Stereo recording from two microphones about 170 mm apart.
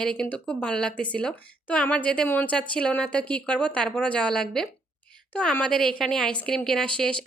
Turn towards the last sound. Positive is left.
turn(degrees=5)  # may be behind; listen again after turning